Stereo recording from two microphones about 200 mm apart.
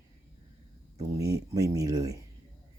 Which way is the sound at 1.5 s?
20° right (ahead or behind).